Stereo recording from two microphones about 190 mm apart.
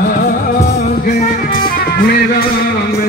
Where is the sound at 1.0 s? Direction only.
45° left (ahead or behind).